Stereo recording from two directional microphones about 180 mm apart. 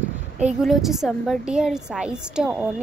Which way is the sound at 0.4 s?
5° right (ahead or behind).